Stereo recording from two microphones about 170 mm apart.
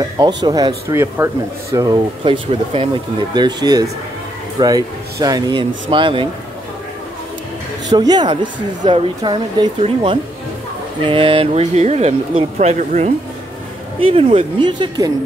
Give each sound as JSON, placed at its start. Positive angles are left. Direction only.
{"t": 0.4, "sound": "a woman's voice", "side_deg": -25}
{"t": 2.2, "sound": "a woman's voice", "side_deg": -30}
{"t": 7.9, "sound": "a woman's voice", "side_deg": -25}
{"t": 13.9, "sound": "speech", "side_deg": -30}